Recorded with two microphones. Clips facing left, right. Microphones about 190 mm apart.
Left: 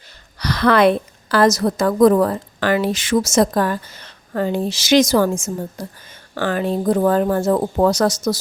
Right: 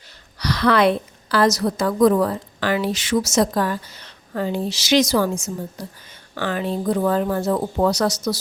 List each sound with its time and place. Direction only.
0.3 s a woman's voice: 50° left (ahead or behind)